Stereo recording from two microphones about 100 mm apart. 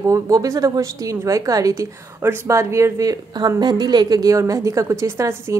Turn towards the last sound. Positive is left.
turn(degrees=-30)  # may be behind; listen again after turning